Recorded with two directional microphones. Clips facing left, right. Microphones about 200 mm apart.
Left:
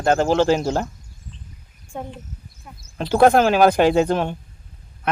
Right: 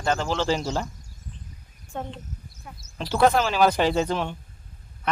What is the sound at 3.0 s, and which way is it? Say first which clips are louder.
Speech: left 6 dB; 50° left (ahead or behind).